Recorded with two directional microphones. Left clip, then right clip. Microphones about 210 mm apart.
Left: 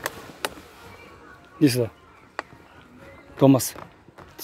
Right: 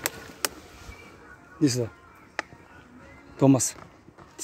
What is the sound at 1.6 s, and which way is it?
Speech, 10° left (ahead or behind).